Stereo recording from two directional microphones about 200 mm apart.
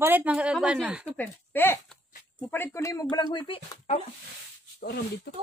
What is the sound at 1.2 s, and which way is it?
Speech, 10° left (ahead or behind).